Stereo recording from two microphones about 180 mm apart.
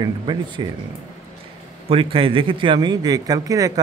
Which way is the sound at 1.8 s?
30° right (ahead or behind).